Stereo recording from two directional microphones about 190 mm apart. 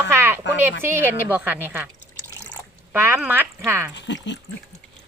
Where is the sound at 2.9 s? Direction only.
10° right (ahead or behind).